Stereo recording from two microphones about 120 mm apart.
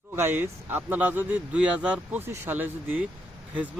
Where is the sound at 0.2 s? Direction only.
20° right (ahead or behind).